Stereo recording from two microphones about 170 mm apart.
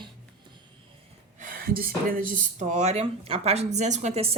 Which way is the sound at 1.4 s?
55° right (ahead or behind).